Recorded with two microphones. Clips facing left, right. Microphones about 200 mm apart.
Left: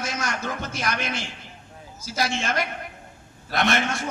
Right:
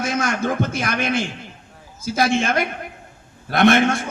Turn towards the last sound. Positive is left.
turn(degrees=-55)  # may be behind; listen again after turning